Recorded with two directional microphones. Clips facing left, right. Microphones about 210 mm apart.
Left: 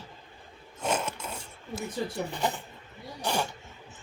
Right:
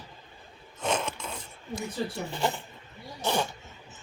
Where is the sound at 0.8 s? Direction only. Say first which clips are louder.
Even; 10° left (ahead or behind).